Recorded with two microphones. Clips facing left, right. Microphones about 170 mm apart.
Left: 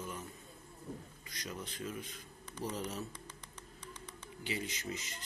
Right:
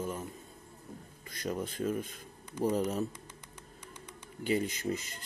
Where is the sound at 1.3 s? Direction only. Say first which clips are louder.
Right 9 dB; 55° right (ahead or behind).